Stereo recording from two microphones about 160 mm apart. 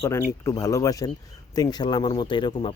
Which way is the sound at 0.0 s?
15° left (ahead or behind).